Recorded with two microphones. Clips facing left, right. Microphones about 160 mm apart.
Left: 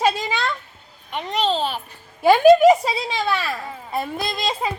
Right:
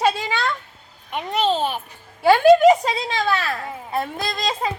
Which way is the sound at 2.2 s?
15° left (ahead or behind).